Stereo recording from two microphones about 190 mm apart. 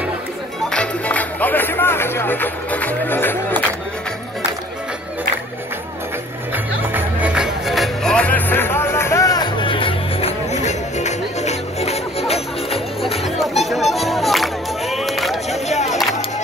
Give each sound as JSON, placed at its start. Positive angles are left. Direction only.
{"t": 0.7, "sound": "music", "side_deg": 5}
{"t": 6.5, "sound": "music", "side_deg": -10}
{"t": 13.2, "sound": "music", "side_deg": 0}
{"t": 15.7, "sound": "music", "side_deg": 35}